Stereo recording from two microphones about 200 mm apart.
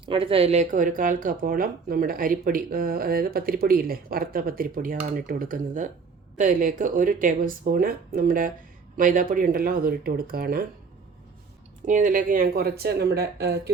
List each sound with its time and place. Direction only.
0.0 s speech: 25° right (ahead or behind); by 10.6 s 50° right (ahead or behind)
11.9 s speech: 40° right (ahead or behind)